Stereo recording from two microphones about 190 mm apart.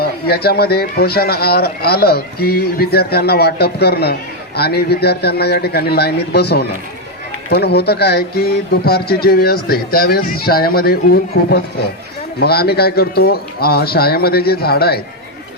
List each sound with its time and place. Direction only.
0.0 s speech: 55° left (ahead or behind)